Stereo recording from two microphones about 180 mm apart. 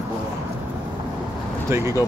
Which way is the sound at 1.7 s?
15° right (ahead or behind).